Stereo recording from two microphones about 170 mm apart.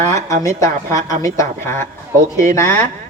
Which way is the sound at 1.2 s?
15° left (ahead or behind).